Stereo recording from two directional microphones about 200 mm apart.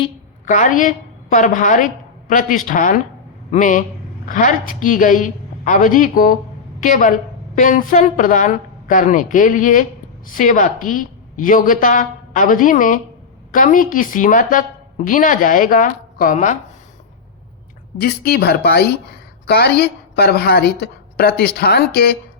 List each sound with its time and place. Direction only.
0.4 s a woman's voice: 40° left (ahead or behind)
18.0 s a woman's voice: 50° left (ahead or behind)